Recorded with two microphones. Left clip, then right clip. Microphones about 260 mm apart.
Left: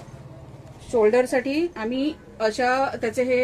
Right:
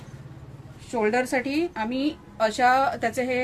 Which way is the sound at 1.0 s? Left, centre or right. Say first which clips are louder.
Left 4 dB; right.